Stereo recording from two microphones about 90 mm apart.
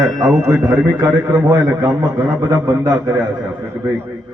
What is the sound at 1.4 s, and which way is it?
A man's voice, 50° right (ahead or behind).